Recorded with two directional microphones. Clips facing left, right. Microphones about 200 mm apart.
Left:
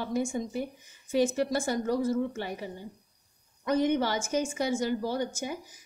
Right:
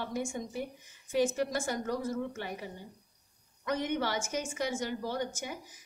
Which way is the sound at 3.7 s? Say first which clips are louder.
Left 6 dB; 35° left (ahead or behind).